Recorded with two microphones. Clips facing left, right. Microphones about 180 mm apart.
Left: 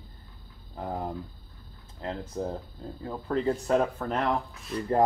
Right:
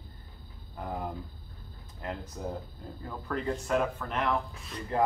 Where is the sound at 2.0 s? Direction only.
25° left (ahead or behind).